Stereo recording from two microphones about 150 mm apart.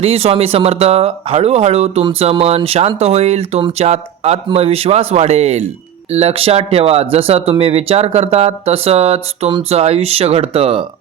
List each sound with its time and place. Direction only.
0.0 s speech: 40° right (ahead or behind)